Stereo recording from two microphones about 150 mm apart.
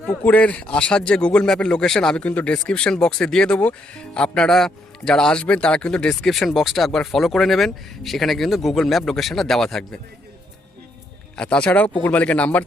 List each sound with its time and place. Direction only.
0.0 s speech: 10° left (ahead or behind)
11.3 s speech: 5° left (ahead or behind)